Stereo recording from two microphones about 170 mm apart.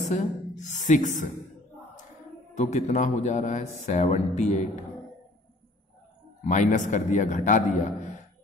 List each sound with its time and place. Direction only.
0.1 s a woman's voice: 45° left (ahead or behind)
2.5 s a man's voice: 45° left (ahead or behind)
6.4 s a man's voice: 45° left (ahead or behind)